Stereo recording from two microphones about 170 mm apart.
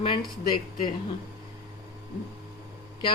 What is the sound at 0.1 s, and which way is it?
Speech, 25° left (ahead or behind).